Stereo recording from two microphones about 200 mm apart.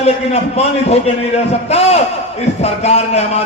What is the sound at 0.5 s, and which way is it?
A man's voice, 30° left (ahead or behind).